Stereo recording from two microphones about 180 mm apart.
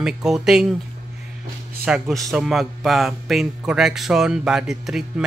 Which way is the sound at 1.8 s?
Centre (ahead or behind).